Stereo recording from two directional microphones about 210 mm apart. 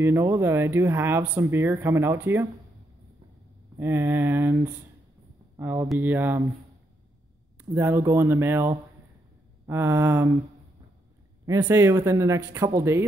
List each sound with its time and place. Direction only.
0.0 s speech: 10° right (ahead or behind)
3.8 s speech: 10° right (ahead or behind)
5.6 s speech: 10° right (ahead or behind)
7.5 s speech: 10° right (ahead or behind)
11.4 s speech: 15° right (ahead or behind)